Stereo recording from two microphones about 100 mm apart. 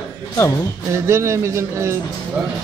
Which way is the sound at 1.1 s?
25° right (ahead or behind).